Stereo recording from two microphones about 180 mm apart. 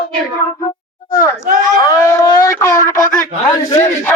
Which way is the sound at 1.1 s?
15° left (ahead or behind).